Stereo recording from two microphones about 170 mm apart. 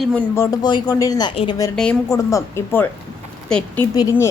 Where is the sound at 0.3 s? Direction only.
25° left (ahead or behind).